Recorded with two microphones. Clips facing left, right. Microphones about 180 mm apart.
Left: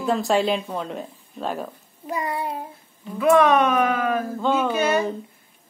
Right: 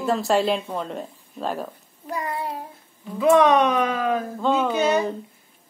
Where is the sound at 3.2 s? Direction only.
20° right (ahead or behind).